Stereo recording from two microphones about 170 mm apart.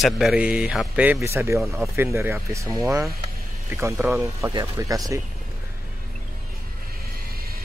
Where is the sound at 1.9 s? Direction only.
15° right (ahead or behind).